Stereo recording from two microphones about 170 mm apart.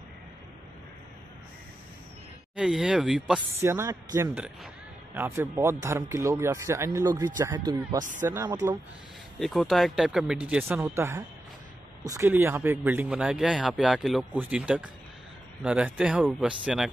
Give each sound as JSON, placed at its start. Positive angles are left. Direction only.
{"t": 2.5, "sound": "speech", "side_deg": -5}
{"t": 3.5, "sound": "speech", "side_deg": -15}
{"t": 8.0, "sound": "speech", "side_deg": -50}
{"t": 8.5, "sound": "speech", "side_deg": -20}
{"t": 9.4, "sound": "speech", "side_deg": 0}